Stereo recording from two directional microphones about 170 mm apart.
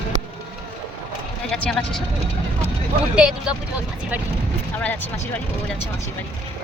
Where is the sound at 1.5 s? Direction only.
5° left (ahead or behind).